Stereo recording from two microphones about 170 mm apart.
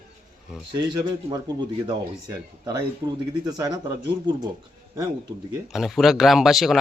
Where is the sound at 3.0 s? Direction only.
20° right (ahead or behind).